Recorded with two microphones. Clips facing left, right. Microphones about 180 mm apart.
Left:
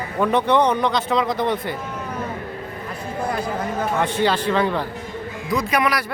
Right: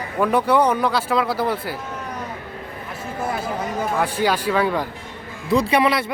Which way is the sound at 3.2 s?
5° right (ahead or behind).